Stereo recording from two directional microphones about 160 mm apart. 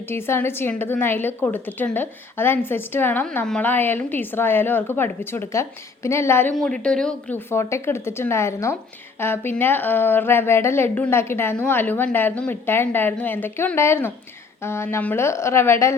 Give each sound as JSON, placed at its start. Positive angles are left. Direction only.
{"t": 0.1, "sound": "a woman's voice", "side_deg": 15}
{"t": 6.5, "sound": "a woman's voice", "side_deg": 5}